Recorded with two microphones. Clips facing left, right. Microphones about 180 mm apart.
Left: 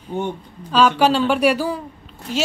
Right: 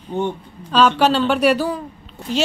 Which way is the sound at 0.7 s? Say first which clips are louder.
Even; 10° left (ahead or behind).